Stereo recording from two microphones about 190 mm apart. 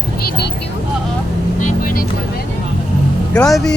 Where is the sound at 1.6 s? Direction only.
45° left (ahead or behind).